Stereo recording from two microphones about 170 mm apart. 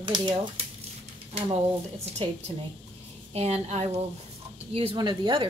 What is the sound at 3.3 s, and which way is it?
A woman's voice, 40° right (ahead or behind).